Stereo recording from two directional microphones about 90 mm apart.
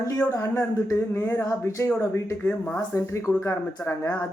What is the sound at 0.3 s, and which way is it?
Speech, 35° left (ahead or behind).